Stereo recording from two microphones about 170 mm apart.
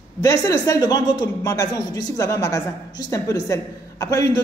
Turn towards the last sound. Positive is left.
turn(degrees=20)  # may be behind; listen again after turning